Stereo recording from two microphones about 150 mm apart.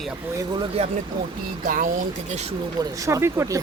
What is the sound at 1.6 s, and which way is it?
Speech, 65° right (ahead or behind).